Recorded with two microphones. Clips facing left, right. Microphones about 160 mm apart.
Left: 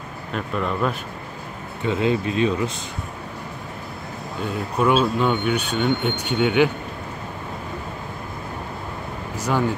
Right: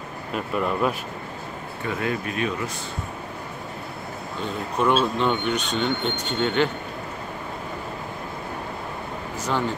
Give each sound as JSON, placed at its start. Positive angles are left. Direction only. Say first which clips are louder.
{"t": 0.3, "sound": "speech", "louder": "even", "side_deg": -5}
{"t": 1.9, "sound": "speech", "louder": "left 6 dB", "side_deg": 25}
{"t": 4.4, "sound": "speech", "louder": "left 2 dB", "side_deg": 5}
{"t": 9.4, "sound": "speech", "louder": "left 4 dB", "side_deg": 10}